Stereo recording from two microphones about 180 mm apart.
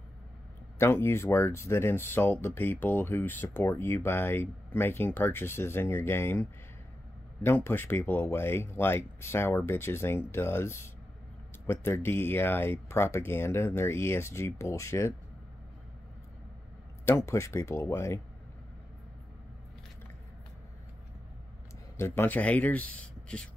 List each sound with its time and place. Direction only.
0.7 s speech: 15° left (ahead or behind)
7.4 s speech: 10° left (ahead or behind)
17.3 s speech: 15° left (ahead or behind)
21.9 s speech: 15° left (ahead or behind)